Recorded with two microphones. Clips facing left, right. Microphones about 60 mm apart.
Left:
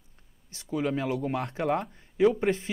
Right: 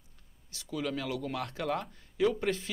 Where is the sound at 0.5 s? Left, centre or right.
Left.